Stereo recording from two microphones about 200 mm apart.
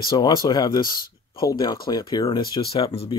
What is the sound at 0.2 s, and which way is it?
Speech, 20° left (ahead or behind).